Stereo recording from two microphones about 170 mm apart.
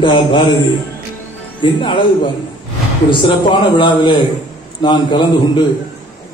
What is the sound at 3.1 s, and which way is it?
A man's voice, 30° left (ahead or behind).